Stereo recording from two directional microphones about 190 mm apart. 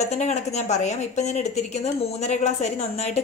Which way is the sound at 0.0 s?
35° left (ahead or behind).